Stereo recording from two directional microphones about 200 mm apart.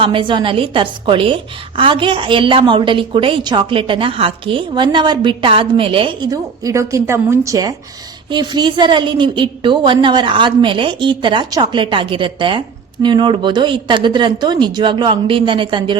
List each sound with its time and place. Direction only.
0.0 s a woman's voice: 25° right (ahead or behind)